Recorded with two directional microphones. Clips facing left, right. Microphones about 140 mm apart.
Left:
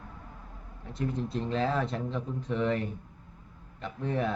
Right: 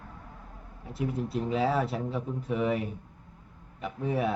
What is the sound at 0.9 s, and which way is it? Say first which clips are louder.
Speech: right 1 dB; 5° right (ahead or behind).